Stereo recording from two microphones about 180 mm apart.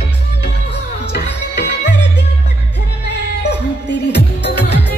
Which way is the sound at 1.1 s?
70° left (ahead or behind).